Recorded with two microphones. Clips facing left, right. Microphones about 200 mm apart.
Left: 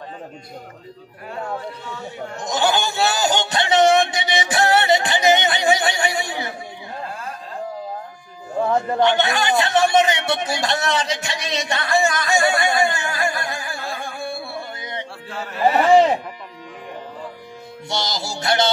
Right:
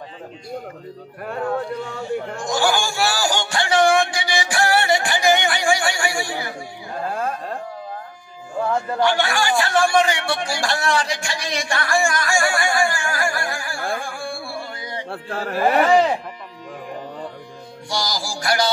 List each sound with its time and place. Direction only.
2.0 s a sound: 20° left (ahead or behind)
7.1 s a sound: 50° right (ahead or behind)
8.5 s a man's voice: 20° left (ahead or behind)
15.0 s speech: 55° right (ahead or behind)
15.9 s music: 20° left (ahead or behind)
17.8 s music: 25° left (ahead or behind)